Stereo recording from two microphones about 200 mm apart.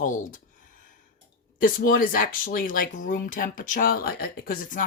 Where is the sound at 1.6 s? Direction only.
45° left (ahead or behind).